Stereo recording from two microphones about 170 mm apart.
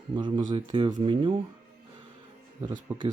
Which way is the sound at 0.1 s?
25° right (ahead or behind).